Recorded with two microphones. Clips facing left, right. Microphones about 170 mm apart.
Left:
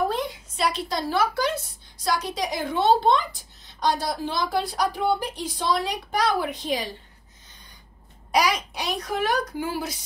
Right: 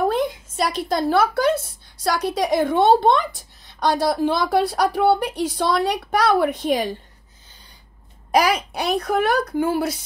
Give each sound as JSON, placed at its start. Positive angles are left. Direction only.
{"t": 0.1, "sound": "a woman's voice", "side_deg": -50}
{"t": 8.3, "sound": "a woman's voice", "side_deg": -55}